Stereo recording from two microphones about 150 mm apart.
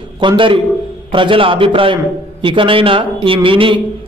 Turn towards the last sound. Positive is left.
turn(degrees=-35)  # may be behind; listen again after turning